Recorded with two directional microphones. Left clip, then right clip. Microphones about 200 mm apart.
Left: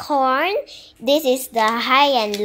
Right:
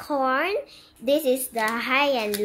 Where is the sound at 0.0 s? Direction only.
10° left (ahead or behind).